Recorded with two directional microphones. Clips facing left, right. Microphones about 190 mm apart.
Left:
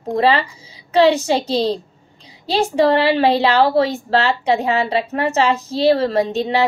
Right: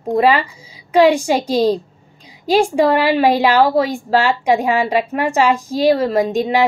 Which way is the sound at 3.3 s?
15° right (ahead or behind).